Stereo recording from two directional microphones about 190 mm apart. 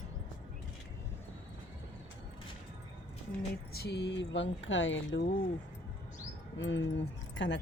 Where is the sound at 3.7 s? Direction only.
60° left (ahead or behind); by 5.2 s 80° left.